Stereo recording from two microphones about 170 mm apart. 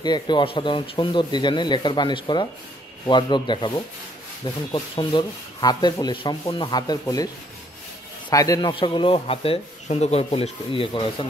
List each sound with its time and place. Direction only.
0.0 s sanding: 25° left (ahead or behind)
8.3 s speech: 20° left (ahead or behind)